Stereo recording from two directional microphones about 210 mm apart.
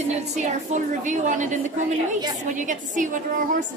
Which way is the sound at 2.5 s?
35° right (ahead or behind).